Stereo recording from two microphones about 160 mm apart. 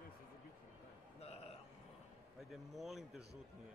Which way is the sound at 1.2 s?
40° left (ahead or behind).